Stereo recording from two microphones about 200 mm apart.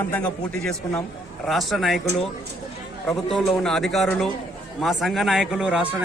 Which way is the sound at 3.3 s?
Centre (ahead or behind).